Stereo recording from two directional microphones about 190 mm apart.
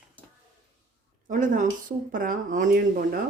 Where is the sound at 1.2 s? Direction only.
45° right (ahead or behind).